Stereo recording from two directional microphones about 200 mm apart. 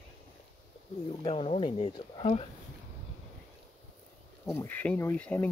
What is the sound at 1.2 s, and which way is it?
Speech, 30° left (ahead or behind).